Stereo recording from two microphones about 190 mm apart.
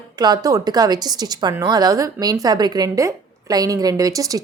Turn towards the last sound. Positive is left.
turn(degrees=-20)  # may be behind; listen again after turning